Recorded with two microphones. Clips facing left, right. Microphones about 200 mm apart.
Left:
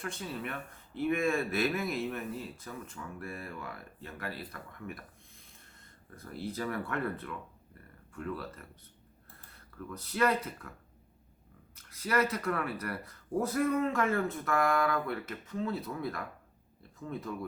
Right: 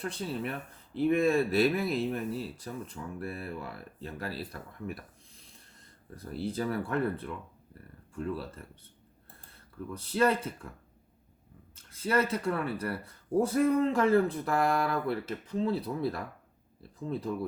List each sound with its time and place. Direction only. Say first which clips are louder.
0.0 s speech: right 4 dB; 30° right (ahead or behind)
6.1 s speech: right 4 dB; 30° right (ahead or behind)
9.9 s speech: right 3 dB; 30° right (ahead or behind)
11.7 s speech: right 3 dB; 25° right (ahead or behind)